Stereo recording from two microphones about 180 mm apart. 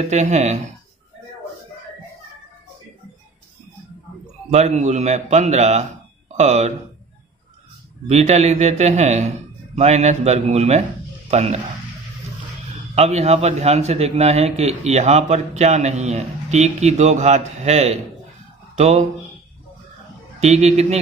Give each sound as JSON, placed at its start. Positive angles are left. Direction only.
{"t": 0.0, "sound": "a man's voice", "side_deg": -40}
{"t": 4.5, "sound": "a man's voice", "side_deg": -40}
{"t": 8.1, "sound": "a man's voice", "side_deg": -40}
{"t": 12.9, "sound": "a man's voice", "side_deg": -35}
{"t": 20.3, "sound": "a man's voice", "side_deg": -40}